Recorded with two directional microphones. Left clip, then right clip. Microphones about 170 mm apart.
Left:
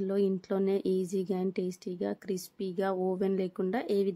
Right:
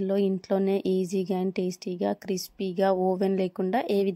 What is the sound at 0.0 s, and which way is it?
Speech, 20° right (ahead or behind).